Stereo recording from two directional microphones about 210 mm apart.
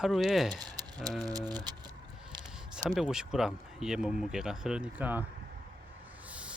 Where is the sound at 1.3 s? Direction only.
20° right (ahead or behind).